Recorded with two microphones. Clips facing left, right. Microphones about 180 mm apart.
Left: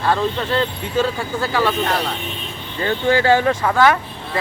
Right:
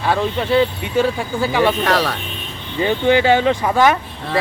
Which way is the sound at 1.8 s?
90° right.